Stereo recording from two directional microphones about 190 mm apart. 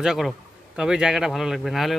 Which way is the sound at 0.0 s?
Centre (ahead or behind).